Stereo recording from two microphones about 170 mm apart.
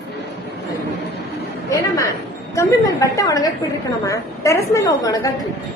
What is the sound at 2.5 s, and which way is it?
A woman's voice, 20° left (ahead or behind).